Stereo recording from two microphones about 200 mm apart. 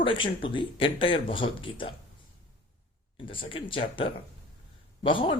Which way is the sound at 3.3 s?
25° left (ahead or behind).